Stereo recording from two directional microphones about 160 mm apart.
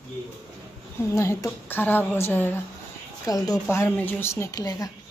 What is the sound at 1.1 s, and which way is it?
Speech, 15° left (ahead or behind).